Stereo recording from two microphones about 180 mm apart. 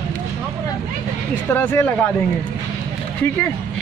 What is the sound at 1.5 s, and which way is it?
Speech, 10° left (ahead or behind).